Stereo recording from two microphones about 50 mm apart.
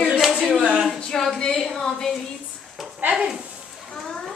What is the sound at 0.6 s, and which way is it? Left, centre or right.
Speech, right.